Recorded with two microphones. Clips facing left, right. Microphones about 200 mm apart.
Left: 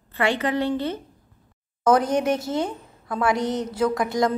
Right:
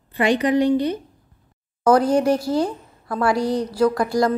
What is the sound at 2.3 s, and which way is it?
A woman's voice, 25° left (ahead or behind).